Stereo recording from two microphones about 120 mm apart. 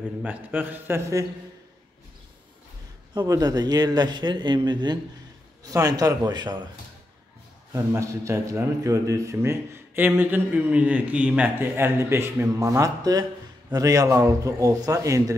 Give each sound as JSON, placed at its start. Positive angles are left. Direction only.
{"t": 0.2, "sound": "a man's voice", "side_deg": -15}
{"t": 3.2, "sound": "speech", "side_deg": -30}
{"t": 7.7, "sound": "a man's voice", "side_deg": -25}